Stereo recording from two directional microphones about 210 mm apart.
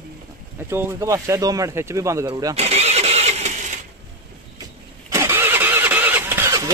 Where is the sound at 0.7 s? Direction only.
10° right (ahead or behind).